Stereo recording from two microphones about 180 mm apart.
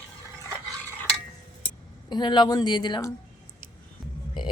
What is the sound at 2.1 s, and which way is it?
Speech, 25° left (ahead or behind).